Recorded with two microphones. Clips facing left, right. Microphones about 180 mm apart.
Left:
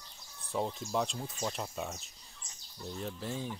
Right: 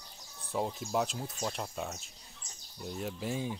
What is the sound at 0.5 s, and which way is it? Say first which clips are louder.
Speech: right 1 dB; 5° right (ahead or behind).